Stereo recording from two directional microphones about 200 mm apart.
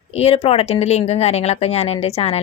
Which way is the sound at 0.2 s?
30° left (ahead or behind).